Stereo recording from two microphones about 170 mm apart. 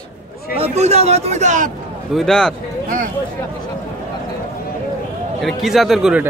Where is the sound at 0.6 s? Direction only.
40° right (ahead or behind).